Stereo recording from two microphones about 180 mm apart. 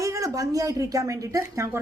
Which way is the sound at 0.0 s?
15° right (ahead or behind).